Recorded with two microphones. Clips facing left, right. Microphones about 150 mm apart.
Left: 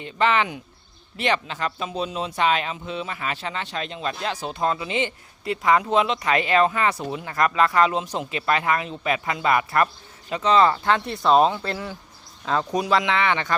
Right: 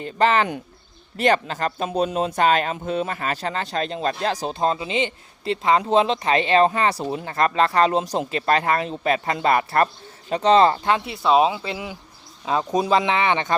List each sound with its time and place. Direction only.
0.0 s speech: 40° right (ahead or behind)
11.0 s speech: 5° right (ahead or behind); by 13.6 s 20° right (ahead or behind)